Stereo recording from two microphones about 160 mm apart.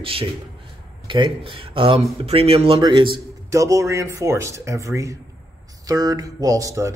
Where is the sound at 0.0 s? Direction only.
35° right (ahead or behind).